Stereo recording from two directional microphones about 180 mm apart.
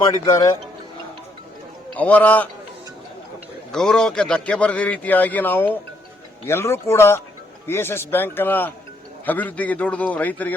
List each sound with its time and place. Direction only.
0.0 s speech: 20° left (ahead or behind)
1.9 s a man's voice: 10° left (ahead or behind)
3.7 s a man's voice: 5° left (ahead or behind)